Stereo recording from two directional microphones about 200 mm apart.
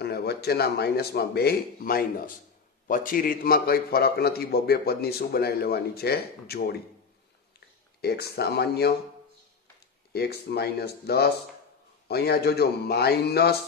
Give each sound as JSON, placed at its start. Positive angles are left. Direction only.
{"t": 0.0, "sound": "a man's voice", "side_deg": 55}
{"t": 8.0, "sound": "a man's voice", "side_deg": 50}
{"t": 10.1, "sound": "a man's voice", "side_deg": 55}